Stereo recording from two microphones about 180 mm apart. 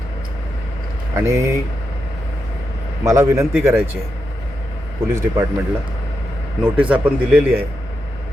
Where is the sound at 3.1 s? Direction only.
15° right (ahead or behind).